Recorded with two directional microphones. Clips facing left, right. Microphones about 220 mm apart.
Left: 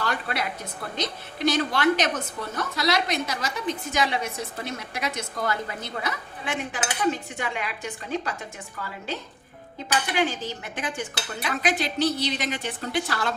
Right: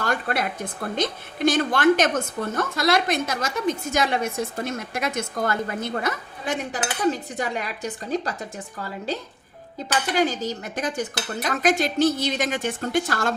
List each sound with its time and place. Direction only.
0.0 s a woman's voice: 50° right (ahead or behind)